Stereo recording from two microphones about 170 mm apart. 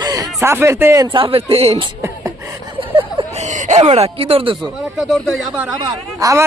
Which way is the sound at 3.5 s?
40° right (ahead or behind).